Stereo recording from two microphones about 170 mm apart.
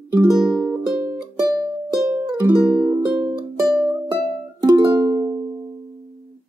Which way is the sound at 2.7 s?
25° right (ahead or behind).